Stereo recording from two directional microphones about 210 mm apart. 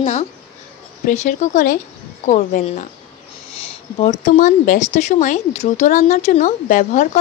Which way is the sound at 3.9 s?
35° left (ahead or behind).